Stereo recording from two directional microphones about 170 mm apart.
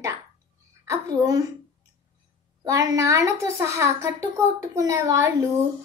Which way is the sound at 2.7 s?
20° right (ahead or behind).